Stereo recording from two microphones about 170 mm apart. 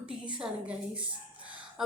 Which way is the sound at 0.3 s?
5° right (ahead or behind).